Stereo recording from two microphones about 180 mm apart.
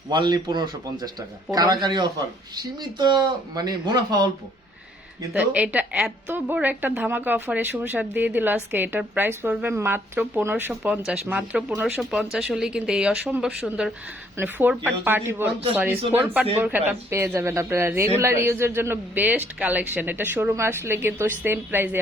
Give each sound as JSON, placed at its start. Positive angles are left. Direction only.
{"t": 0.1, "sound": "a man's voice", "side_deg": -25}
{"t": 5.3, "sound": "a woman's voice", "side_deg": -10}